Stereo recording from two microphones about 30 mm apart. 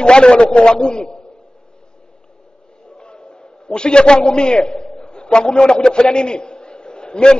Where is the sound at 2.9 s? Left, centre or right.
Left.